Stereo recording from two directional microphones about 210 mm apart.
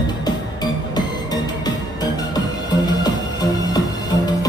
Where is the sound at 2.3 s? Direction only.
20° left (ahead or behind).